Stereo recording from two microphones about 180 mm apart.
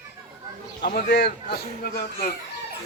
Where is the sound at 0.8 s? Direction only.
60° left (ahead or behind).